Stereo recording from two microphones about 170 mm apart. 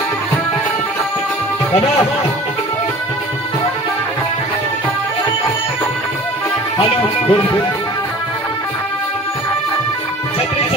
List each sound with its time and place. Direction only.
6.8 s music: 30° left (ahead or behind)